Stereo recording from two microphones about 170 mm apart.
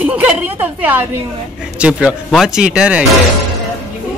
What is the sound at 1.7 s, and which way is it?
Speech, 5° right (ahead or behind).